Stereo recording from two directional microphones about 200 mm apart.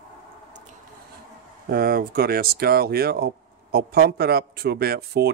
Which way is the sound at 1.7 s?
50° right (ahead or behind).